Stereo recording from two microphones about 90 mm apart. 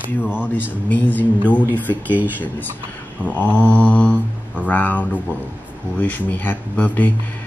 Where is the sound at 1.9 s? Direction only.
20° right (ahead or behind).